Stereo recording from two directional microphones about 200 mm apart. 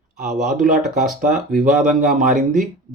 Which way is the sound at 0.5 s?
40° right (ahead or behind).